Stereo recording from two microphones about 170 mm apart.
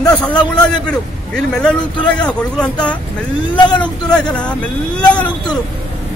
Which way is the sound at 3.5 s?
25° left (ahead or behind).